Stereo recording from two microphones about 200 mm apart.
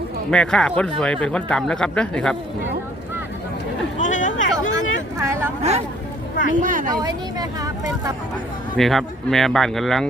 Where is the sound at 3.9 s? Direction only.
40° left (ahead or behind).